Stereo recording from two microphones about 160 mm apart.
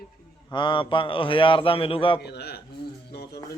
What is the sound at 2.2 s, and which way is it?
Speech, 90° left.